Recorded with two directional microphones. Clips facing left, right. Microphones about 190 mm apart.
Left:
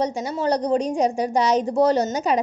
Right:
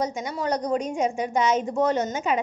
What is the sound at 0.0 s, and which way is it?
A woman's voice, 30° left (ahead or behind).